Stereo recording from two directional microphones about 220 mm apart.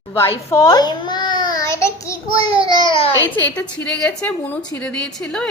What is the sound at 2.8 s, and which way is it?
Speech, 25° left (ahead or behind).